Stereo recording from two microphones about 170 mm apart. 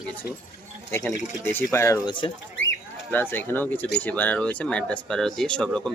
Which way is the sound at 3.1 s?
10° left (ahead or behind).